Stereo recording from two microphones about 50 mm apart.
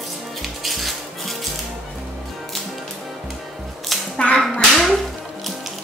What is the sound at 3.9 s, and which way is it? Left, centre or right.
Music, centre.